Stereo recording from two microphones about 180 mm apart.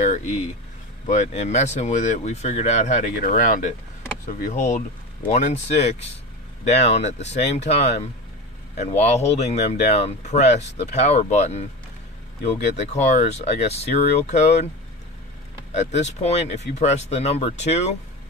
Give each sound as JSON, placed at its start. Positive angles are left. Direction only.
{"t": 0.0, "sound": "speech", "side_deg": 40}
{"t": 15.7, "sound": "speech", "side_deg": 40}